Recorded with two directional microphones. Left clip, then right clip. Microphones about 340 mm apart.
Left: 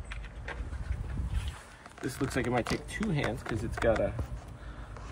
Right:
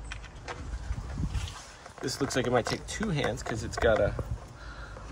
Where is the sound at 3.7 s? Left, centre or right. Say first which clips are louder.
Right 3 dB; centre.